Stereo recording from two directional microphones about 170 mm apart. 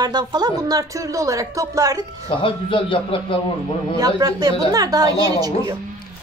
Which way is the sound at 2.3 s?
30° left (ahead or behind).